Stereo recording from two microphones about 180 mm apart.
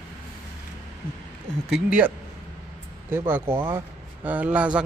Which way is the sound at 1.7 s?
5° right (ahead or behind).